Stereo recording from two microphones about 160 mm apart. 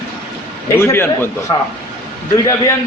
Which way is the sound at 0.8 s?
15° left (ahead or behind).